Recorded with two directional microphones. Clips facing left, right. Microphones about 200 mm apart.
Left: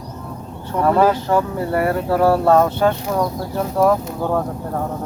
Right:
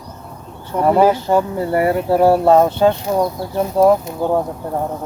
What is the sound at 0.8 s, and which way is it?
Speech, 15° right (ahead or behind).